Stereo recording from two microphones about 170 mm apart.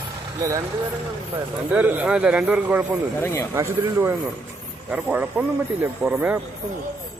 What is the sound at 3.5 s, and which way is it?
Speech, 15° right (ahead or behind).